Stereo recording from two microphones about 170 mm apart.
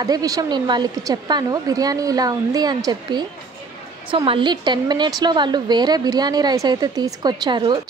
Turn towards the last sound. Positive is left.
turn(degrees=-25)  # may be behind; listen again after turning